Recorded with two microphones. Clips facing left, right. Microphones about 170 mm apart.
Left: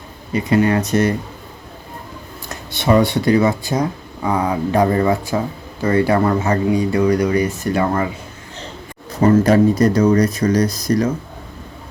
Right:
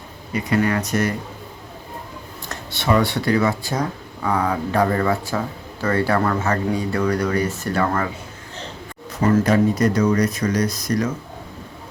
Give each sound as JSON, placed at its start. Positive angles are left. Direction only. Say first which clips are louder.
{"t": 0.3, "sound": "speech", "louder": "left 5 dB", "side_deg": 25}
{"t": 2.5, "sound": "speech", "louder": "left 4 dB", "side_deg": 15}
{"t": 9.1, "sound": "speech", "louder": "left 4 dB", "side_deg": 35}